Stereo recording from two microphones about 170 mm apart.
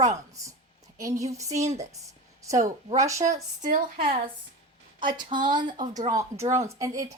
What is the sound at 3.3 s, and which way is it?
Speech, 50° right (ahead or behind).